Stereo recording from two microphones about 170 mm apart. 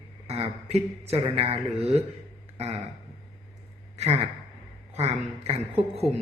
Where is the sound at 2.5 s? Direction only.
35° right (ahead or behind).